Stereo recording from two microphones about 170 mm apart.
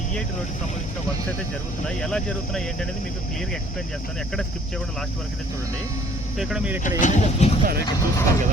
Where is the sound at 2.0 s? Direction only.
5° left (ahead or behind).